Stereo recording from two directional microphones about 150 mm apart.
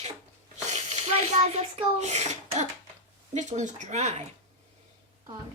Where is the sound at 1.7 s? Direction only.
50° right (ahead or behind).